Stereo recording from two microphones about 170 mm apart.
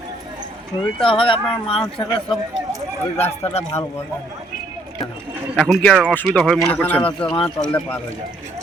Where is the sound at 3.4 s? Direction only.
40° left (ahead or behind).